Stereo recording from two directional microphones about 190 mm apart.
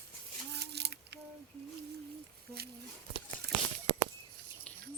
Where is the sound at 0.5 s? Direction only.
60° right (ahead or behind).